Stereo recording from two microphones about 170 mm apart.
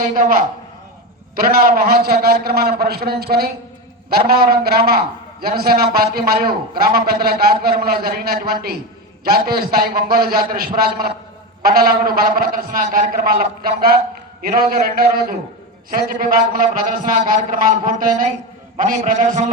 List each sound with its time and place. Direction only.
0.1 s a man's voice: 55° right (ahead or behind)